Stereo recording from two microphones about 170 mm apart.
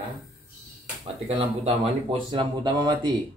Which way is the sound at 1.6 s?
35° right (ahead or behind).